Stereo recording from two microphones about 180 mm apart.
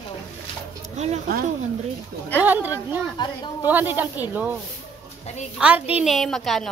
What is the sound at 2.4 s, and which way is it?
Speech, 10° right (ahead or behind).